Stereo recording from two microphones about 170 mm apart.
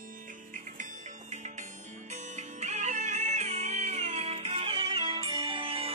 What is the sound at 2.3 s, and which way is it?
Music, 45° right (ahead or behind).